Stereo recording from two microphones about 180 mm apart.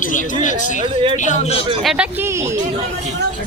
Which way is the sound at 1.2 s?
40° left (ahead or behind).